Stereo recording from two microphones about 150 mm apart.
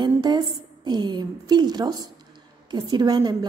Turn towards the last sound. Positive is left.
turn(degrees=-30)  # may be behind; listen again after turning